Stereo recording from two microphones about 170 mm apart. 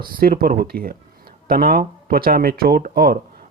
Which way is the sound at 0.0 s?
60° right (ahead or behind).